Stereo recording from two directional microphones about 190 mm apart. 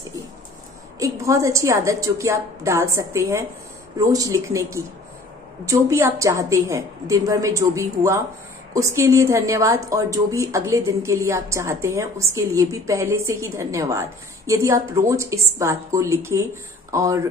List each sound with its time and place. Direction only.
0.9 s a woman's voice: 15° right (ahead or behind)